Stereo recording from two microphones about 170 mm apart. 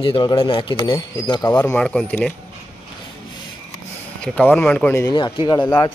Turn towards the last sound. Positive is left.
turn(degrees=15)  # may be behind; listen again after turning